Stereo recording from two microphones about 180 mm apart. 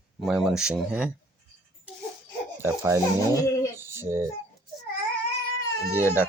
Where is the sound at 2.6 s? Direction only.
15° right (ahead or behind).